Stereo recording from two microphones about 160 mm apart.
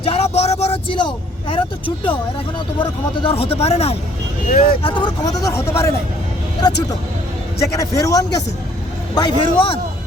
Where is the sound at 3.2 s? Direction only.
35° left (ahead or behind); by 5.9 s 20° left (ahead or behind).